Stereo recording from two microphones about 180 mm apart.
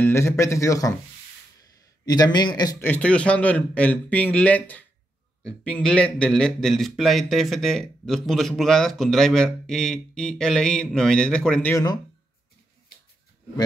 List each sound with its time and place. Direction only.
0.0 s a man's voice: 15° left (ahead or behind)
2.9 s a man's voice: 5° left (ahead or behind)
11.7 s speech: 20° left (ahead or behind)